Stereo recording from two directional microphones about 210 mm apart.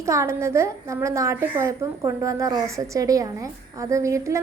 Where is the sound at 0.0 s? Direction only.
15° right (ahead or behind).